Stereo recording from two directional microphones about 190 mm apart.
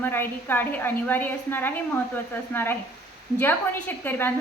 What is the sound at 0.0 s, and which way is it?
A woman's voice, 10° left (ahead or behind).